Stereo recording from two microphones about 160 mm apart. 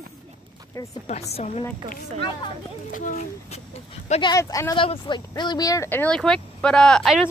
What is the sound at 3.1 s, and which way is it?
Speech, 45° left (ahead or behind).